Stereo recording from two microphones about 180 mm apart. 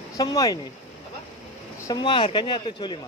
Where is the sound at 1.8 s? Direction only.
25° left (ahead or behind).